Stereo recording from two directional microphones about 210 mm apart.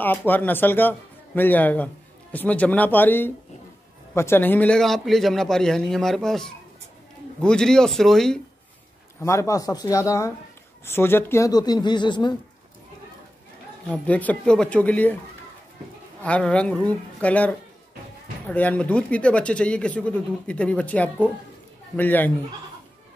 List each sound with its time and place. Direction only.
0.0 s a man's voice: 10° left (ahead or behind)
9.2 s a man's voice: 15° left (ahead or behind)
13.8 s a man's voice: 5° left (ahead or behind)
16.2 s a man's voice: 5° left (ahead or behind)